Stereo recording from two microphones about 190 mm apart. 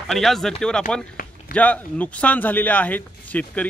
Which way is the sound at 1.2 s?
50° left (ahead or behind).